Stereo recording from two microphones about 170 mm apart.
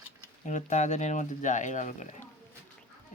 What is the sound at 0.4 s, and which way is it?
Speech, 45° left (ahead or behind).